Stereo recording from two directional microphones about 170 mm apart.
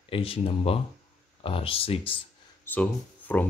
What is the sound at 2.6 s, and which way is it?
Speech, 10° left (ahead or behind).